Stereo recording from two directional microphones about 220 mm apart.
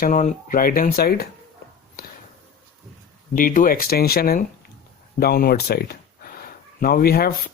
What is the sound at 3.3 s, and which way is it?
A man's voice, 40° left (ahead or behind).